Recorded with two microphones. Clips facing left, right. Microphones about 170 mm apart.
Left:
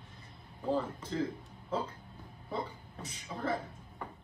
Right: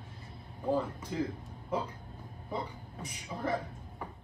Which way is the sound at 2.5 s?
15° right (ahead or behind).